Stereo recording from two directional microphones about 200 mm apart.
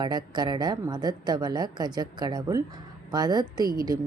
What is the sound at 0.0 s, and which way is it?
Speech, 20° right (ahead or behind).